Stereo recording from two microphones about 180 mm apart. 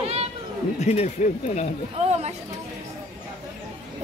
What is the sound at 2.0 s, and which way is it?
Speech, 35° right (ahead or behind).